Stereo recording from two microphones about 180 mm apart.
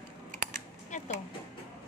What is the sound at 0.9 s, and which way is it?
Speech, 45° left (ahead or behind).